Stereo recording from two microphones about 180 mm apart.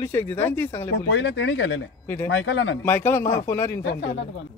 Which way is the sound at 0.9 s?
85° left.